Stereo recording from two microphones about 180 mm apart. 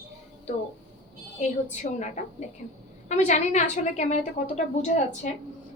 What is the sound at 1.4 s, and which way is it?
Speech, 40° left (ahead or behind).